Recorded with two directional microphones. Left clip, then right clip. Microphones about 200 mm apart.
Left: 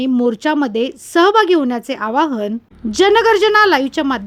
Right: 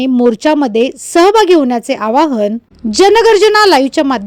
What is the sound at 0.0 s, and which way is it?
A woman's voice, 20° right (ahead or behind).